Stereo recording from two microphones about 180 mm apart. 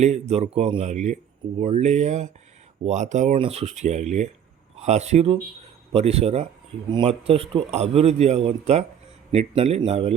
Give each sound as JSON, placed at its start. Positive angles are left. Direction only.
{"t": 0.0, "sound": "speech", "side_deg": -35}